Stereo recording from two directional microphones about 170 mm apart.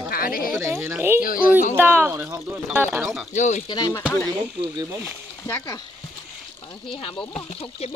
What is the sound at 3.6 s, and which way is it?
Speech, 25° left (ahead or behind).